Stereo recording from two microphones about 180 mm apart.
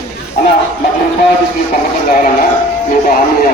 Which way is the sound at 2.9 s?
50° left (ahead or behind).